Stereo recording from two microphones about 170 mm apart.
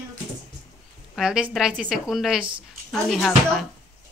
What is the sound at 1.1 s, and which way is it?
A woman's voice, 5° right (ahead or behind).